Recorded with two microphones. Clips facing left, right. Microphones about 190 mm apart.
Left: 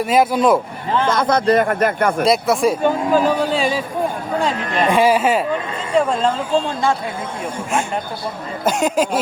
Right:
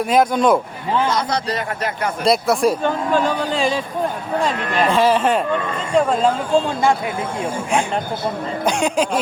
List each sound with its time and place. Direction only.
0.0 s a man's voice: centre (ahead or behind)
1.0 s speech: 50° left (ahead or behind)
2.2 s a man's voice: centre (ahead or behind)
4.9 s a man's voice: 10° left (ahead or behind)
8.6 s a man's voice: 5° left (ahead or behind)